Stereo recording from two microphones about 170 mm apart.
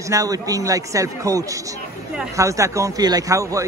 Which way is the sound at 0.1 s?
20° right (ahead or behind).